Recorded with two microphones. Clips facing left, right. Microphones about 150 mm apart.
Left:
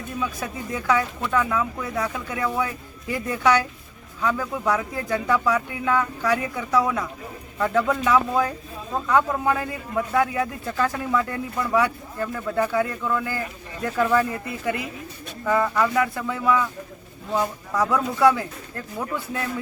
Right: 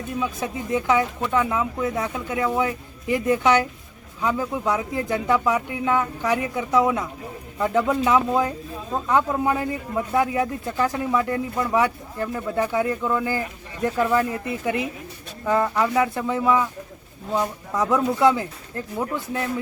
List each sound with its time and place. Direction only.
0.2 s a man's voice: 20° right (ahead or behind)